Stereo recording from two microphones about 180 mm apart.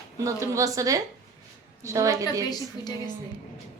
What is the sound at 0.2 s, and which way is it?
A woman's voice, 15° right (ahead or behind).